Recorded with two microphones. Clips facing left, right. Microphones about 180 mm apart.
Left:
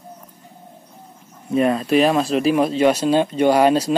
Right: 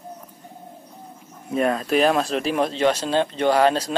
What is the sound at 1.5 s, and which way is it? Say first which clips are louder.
Speech: left 4 dB; centre (ahead or behind).